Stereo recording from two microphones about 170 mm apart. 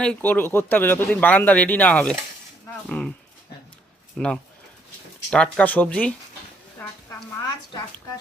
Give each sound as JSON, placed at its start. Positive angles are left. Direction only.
{"t": 0.0, "sound": "speech", "side_deg": 10}
{"t": 4.2, "sound": "speech", "side_deg": 5}
{"t": 6.7, "sound": "a sound", "side_deg": 15}